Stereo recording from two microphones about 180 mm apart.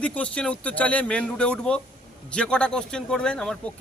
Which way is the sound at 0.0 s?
5° left (ahead or behind).